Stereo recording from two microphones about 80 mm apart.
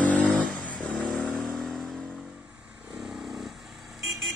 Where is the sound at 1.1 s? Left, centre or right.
Centre.